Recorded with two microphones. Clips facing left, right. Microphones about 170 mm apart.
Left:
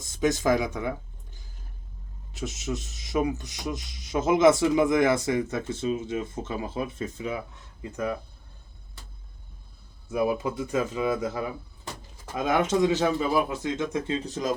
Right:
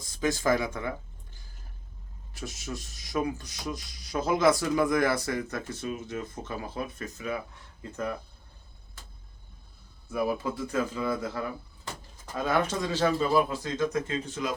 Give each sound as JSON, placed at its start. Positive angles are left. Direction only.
{"t": 0.0, "sound": "speech", "side_deg": 20}
{"t": 7.8, "sound": "speech", "side_deg": 10}
{"t": 10.1, "sound": "speech", "side_deg": 20}